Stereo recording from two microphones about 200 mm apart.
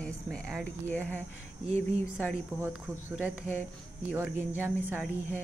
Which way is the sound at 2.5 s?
10° right (ahead or behind).